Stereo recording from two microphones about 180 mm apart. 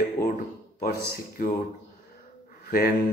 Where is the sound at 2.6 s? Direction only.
55° left (ahead or behind).